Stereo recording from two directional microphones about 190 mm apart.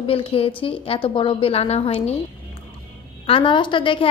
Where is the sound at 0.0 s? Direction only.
30° left (ahead or behind).